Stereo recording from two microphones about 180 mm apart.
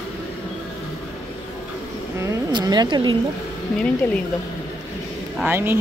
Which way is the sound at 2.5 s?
25° right (ahead or behind).